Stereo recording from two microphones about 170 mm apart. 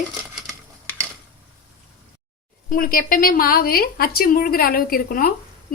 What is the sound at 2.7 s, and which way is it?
A woman's voice, 60° left (ahead or behind).